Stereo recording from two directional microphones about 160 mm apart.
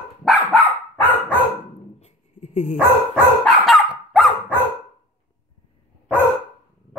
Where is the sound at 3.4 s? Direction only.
Centre (ahead or behind).